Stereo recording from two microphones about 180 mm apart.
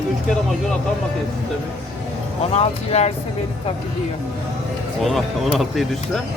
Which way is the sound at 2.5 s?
35° left (ahead or behind).